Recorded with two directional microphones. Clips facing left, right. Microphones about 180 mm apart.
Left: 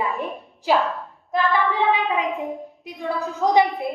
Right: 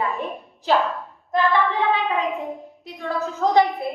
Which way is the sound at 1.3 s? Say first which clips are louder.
Right 1 dB; 10° left (ahead or behind).